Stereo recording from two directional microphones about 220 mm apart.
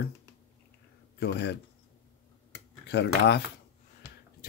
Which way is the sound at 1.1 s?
50° left (ahead or behind).